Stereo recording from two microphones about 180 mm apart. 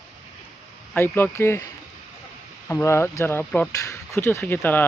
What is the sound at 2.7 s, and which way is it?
Speech, 15° left (ahead or behind).